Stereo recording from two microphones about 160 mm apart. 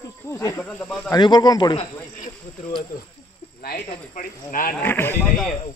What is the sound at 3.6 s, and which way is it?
Speech, 70° left (ahead or behind).